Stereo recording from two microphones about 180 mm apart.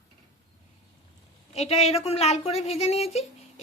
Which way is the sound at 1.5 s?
35° left (ahead or behind).